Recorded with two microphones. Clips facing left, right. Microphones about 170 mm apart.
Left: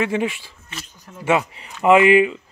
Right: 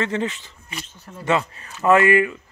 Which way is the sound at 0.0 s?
10° left (ahead or behind).